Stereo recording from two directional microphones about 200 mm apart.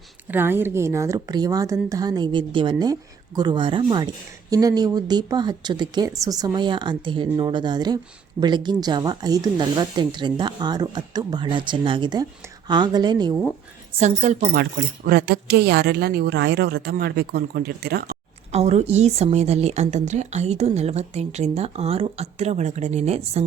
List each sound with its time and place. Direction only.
0.3 s a woman's voice: 10° right (ahead or behind)
14.0 s a woman's voice: 35° right (ahead or behind)
14.5 s speech: 50° right (ahead or behind)
18.5 s a woman's voice: 30° right (ahead or behind)